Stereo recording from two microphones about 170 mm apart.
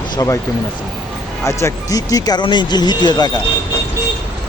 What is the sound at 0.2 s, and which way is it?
Speech, 20° left (ahead or behind).